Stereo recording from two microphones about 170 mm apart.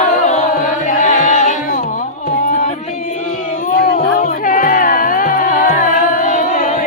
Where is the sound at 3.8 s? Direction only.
55° left (ahead or behind).